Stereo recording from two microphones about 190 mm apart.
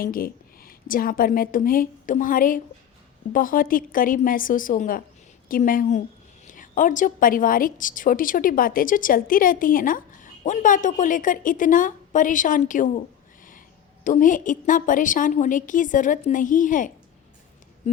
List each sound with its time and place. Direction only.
0.0 s a woman's voice: 50° left (ahead or behind)
14.0 s a woman's voice: 45° left (ahead or behind)